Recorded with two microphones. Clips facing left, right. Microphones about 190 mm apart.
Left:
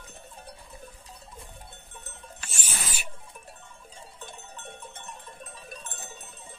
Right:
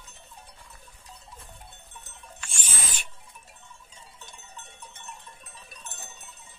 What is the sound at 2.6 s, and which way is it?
Rodents, 10° left (ahead or behind).